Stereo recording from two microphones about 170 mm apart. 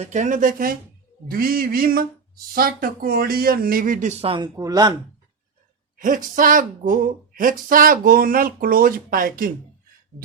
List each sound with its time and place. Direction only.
0.0 s speech: 45° right (ahead or behind); by 4.9 s 25° right (ahead or behind)
6.0 s speech: 50° right (ahead or behind)